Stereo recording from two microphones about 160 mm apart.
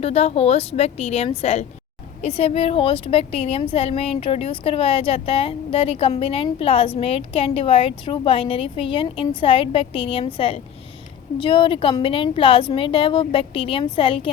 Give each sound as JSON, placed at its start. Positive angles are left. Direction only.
{"t": 0.0, "sound": "a woman's voice", "side_deg": 40}